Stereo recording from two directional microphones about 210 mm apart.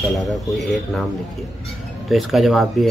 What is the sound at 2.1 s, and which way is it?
Speech, centre (ahead or behind).